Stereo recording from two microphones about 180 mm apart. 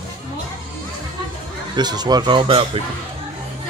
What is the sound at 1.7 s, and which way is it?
Speech, 25° right (ahead or behind).